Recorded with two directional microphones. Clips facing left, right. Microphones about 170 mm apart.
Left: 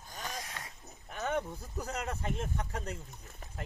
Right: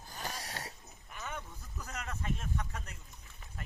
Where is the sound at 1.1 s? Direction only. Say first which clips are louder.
Left 10 dB; 60° left (ahead or behind).